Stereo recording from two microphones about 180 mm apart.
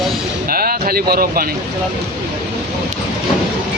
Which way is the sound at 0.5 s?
55° right (ahead or behind).